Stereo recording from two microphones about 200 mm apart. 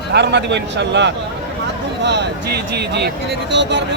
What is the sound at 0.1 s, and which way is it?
Speech, 55° right (ahead or behind).